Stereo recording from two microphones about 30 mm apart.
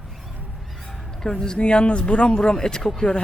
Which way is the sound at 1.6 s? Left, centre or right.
Left.